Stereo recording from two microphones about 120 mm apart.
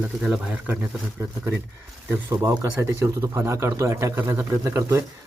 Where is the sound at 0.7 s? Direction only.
15° right (ahead or behind).